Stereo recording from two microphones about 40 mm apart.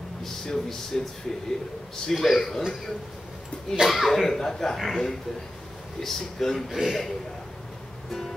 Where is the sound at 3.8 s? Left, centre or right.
Centre.